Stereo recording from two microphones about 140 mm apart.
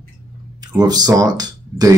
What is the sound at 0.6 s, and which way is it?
Speech, 30° right (ahead or behind).